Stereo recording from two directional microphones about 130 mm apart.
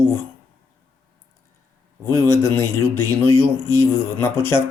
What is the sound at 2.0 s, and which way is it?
Speech, 20° left (ahead or behind).